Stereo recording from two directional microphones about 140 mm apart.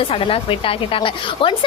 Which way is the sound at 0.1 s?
40° left (ahead or behind).